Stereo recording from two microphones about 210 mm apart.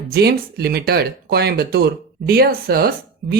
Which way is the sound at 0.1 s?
50° right (ahead or behind).